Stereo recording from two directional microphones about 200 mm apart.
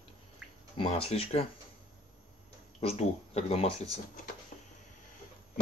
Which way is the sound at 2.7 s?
30° left (ahead or behind).